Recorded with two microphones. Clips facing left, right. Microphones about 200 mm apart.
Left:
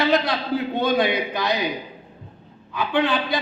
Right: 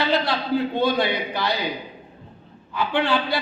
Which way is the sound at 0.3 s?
20° left (ahead or behind).